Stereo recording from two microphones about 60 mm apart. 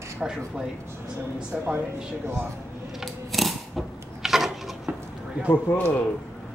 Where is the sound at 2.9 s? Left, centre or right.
Centre.